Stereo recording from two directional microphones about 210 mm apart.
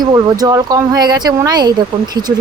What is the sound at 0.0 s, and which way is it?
Speech, 20° right (ahead or behind).